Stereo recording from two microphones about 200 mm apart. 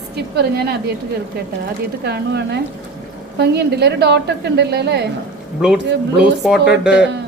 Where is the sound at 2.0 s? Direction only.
55° right (ahead or behind).